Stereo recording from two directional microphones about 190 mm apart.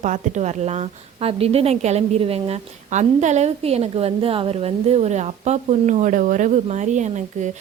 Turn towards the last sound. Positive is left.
turn(degrees=-40)  # may be behind; listen again after turning